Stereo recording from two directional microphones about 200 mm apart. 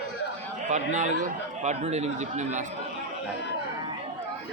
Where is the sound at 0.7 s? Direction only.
35° right (ahead or behind).